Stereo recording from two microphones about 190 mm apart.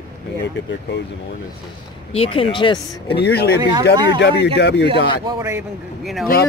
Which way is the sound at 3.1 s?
60° left (ahead or behind).